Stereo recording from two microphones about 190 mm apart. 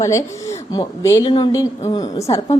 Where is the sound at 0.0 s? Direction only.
15° left (ahead or behind).